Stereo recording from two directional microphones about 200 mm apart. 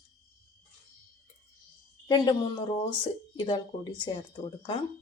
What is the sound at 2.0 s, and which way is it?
Speech, 20° left (ahead or behind).